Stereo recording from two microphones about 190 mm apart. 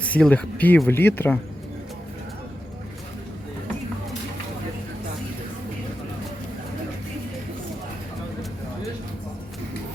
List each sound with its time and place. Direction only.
0.0 s speech: 5° left (ahead or behind)